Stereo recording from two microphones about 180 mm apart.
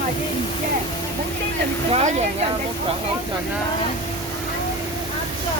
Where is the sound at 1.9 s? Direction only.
40° right (ahead or behind).